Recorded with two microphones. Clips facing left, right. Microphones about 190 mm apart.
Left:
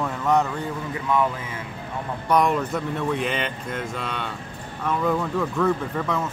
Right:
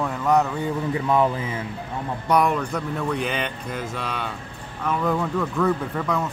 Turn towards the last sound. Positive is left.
turn(degrees=0)  # may be behind; listen again after turning